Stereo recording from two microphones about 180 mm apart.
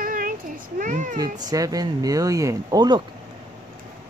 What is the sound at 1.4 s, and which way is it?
Speech, 20° right (ahead or behind).